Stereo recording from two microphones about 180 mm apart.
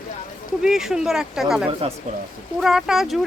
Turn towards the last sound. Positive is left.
turn(degrees=0)  # may be behind; listen again after turning